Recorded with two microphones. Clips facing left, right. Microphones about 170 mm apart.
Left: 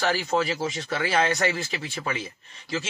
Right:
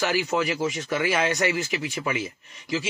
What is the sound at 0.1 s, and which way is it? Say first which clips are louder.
Speech: right 1 dB; 35° left (ahead or behind).